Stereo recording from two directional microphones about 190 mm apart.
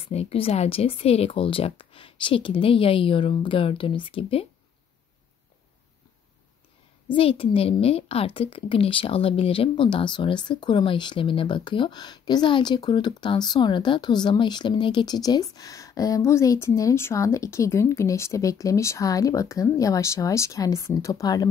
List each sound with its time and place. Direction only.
0.0 s a woman's voice: 30° left (ahead or behind)
7.1 s a woman's voice: 30° left (ahead or behind)